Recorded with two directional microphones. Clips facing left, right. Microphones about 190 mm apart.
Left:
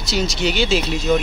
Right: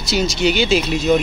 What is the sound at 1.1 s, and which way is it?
Speech, 15° right (ahead or behind).